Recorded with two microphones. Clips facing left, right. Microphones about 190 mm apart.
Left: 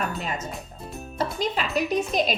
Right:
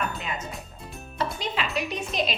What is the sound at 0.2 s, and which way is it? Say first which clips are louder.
A woman's voice: left 3 dB; 40° left (ahead or behind).